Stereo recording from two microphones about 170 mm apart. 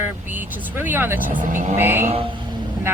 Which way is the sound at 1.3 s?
50° right (ahead or behind).